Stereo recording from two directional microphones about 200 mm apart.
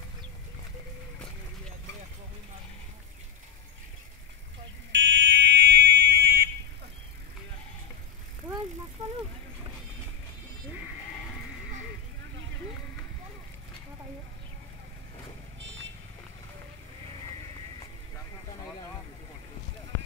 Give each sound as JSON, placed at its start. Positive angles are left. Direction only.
{"t": 4.9, "sound": "fire alarm", "side_deg": -60}
{"t": 9.0, "sound": "bicycle", "side_deg": -35}